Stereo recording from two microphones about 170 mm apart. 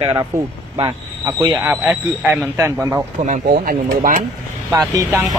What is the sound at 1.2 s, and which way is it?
Speech, 15° right (ahead or behind).